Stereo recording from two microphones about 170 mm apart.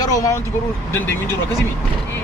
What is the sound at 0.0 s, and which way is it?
Speech, 20° left (ahead or behind).